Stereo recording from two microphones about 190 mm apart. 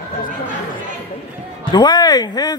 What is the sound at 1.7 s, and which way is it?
Speech, 25° left (ahead or behind).